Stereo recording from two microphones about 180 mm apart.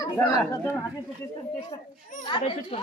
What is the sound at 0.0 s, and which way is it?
Speech, 20° left (ahead or behind).